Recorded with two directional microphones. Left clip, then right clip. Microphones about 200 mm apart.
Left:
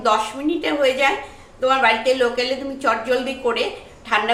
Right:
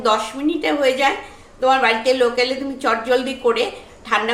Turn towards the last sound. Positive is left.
turn(degrees=-30)  # may be behind; listen again after turning